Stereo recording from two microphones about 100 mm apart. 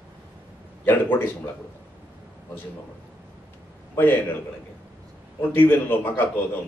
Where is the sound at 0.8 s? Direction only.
20° left (ahead or behind).